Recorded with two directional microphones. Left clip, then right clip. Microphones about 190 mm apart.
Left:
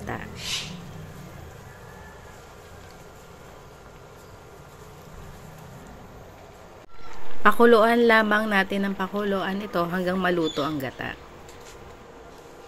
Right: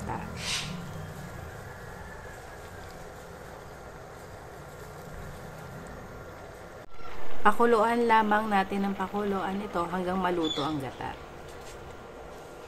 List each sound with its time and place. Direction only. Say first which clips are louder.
7.4 s a woman's voice: left 6 dB; 20° left (ahead or behind)